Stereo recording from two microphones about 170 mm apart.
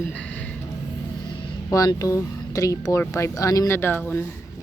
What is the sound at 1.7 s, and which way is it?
Speech, 20° left (ahead or behind).